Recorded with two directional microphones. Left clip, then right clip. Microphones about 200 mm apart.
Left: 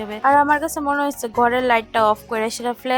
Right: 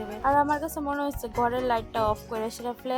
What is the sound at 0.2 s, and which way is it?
Speech, 30° left (ahead or behind).